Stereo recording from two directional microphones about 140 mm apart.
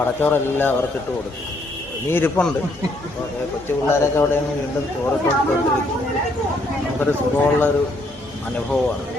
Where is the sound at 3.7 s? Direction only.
20° left (ahead or behind).